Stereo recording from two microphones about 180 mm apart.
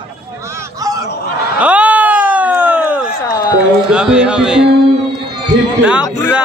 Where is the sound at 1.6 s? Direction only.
10° right (ahead or behind).